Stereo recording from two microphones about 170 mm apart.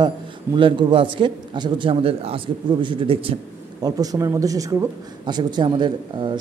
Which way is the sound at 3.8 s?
20° right (ahead or behind).